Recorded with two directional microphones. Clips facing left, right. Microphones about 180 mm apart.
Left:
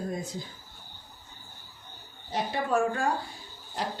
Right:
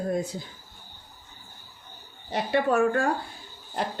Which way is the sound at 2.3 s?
65° right (ahead or behind).